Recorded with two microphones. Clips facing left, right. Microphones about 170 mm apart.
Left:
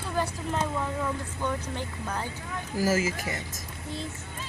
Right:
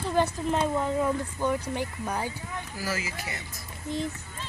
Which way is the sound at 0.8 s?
15° right (ahead or behind).